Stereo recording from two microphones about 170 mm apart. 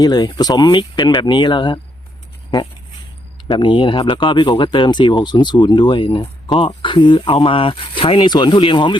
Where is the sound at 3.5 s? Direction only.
25° left (ahead or behind).